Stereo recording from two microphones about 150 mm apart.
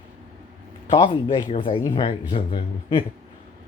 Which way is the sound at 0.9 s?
35° left (ahead or behind).